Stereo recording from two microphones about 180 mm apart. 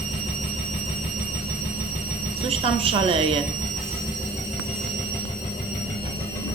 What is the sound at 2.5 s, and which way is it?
Speech, 30° right (ahead or behind).